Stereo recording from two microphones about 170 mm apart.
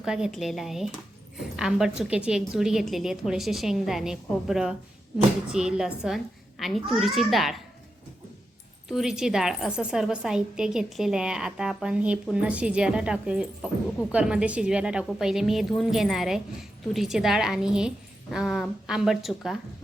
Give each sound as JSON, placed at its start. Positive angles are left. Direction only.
{"t": 0.0, "sound": "a woman's voice", "side_deg": -5}
{"t": 8.9, "sound": "a woman's voice", "side_deg": 0}